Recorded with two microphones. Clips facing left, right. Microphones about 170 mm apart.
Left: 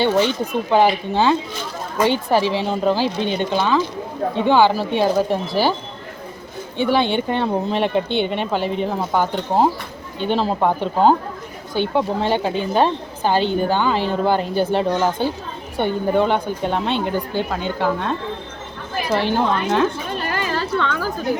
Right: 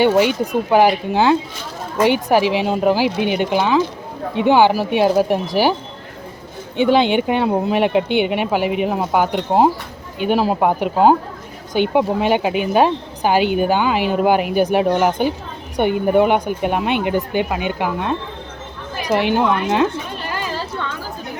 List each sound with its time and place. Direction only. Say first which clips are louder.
0.0 s a woman's voice: right 3 dB; 10° right (ahead or behind)
6.7 s a woman's voice: right 4 dB; 15° right (ahead or behind)
20.1 s a sound: left 2 dB; 55° left (ahead or behind); by 21.1 s 80° left